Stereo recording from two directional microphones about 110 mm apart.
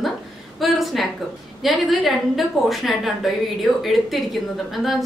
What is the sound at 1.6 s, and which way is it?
A woman's voice, centre (ahead or behind).